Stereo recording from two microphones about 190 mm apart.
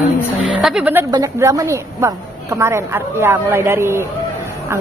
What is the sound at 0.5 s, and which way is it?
Speech, 5° right (ahead or behind).